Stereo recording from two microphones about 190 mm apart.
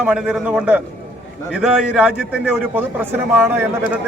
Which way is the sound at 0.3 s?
5° right (ahead or behind).